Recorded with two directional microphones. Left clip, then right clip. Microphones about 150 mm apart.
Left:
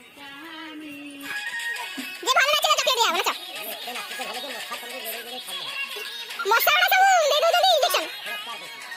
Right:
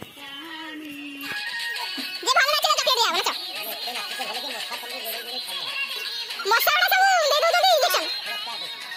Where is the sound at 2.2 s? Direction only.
15° left (ahead or behind).